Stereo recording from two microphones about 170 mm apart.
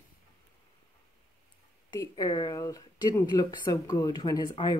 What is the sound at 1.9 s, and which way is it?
Speech, 25° left (ahead or behind).